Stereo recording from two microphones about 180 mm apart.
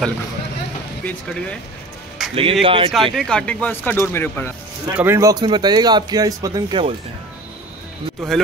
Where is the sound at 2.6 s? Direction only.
30° right (ahead or behind).